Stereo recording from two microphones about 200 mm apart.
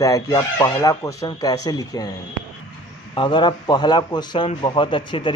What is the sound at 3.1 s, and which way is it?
Speech, 25° left (ahead or behind).